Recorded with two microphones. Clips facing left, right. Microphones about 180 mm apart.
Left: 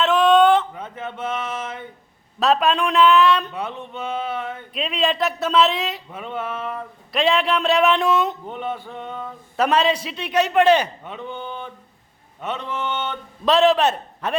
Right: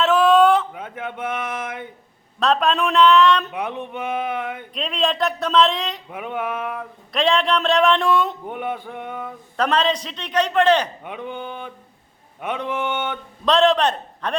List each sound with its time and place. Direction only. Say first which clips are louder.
0.0 s a sound: even; centre (ahead or behind)
2.4 s speech: left 1 dB; 5° left (ahead or behind)
3.4 s speech: right 2 dB; 15° right (ahead or behind)
4.7 s speech: left 1 dB; centre (ahead or behind)
6.1 s speech: right 2 dB; 10° right (ahead or behind)
7.1 s speech: even; 5° left (ahead or behind)
8.4 s speech: right 1 dB; 15° right (ahead or behind)
9.6 s a man's voice: left 1 dB; 10° left (ahead or behind)
11.0 s speech: right 1 dB; 15° right (ahead or behind)
13.4 s speech: left 1 dB; 5° left (ahead or behind)